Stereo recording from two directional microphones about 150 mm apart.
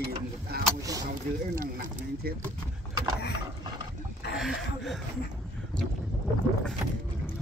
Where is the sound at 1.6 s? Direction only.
65° right (ahead or behind).